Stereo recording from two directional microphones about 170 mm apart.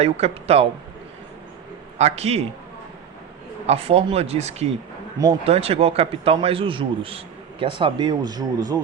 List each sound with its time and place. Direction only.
0.0 s a man's voice: 35° right (ahead or behind)
2.0 s a man's voice: 40° right (ahead or behind)
3.7 s a man's voice: 35° right (ahead or behind)